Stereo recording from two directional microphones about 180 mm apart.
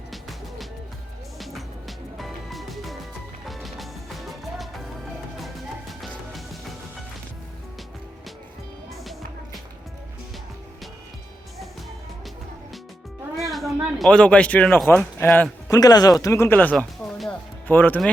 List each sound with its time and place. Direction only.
0.1 s music: centre (ahead or behind)
5.9 s music: centre (ahead or behind)
13.3 s music: centre (ahead or behind)
14.0 s speech: 5° left (ahead or behind)
15.7 s speech: 20° left (ahead or behind)